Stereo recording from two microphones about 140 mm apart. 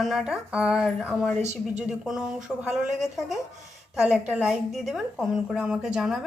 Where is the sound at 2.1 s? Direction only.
5° right (ahead or behind).